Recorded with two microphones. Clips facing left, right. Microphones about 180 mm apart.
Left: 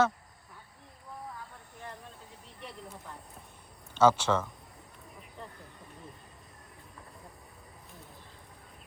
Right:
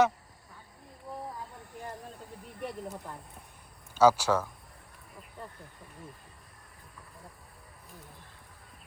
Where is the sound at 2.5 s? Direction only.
50° right (ahead or behind).